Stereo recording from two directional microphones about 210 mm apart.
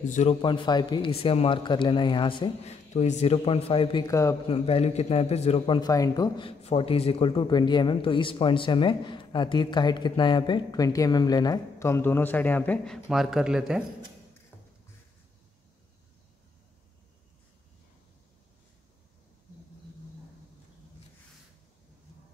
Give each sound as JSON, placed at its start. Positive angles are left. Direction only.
{"t": 0.1, "sound": "a man's voice", "side_deg": 30}
{"t": 4.5, "sound": "a man's voice", "side_deg": 25}